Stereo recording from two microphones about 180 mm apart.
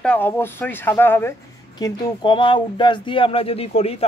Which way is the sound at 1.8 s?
25° left (ahead or behind).